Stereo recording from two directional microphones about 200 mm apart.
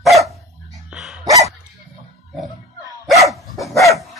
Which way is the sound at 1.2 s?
15° right (ahead or behind).